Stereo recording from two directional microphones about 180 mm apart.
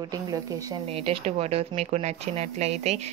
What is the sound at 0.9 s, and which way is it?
Speech, 35° right (ahead or behind).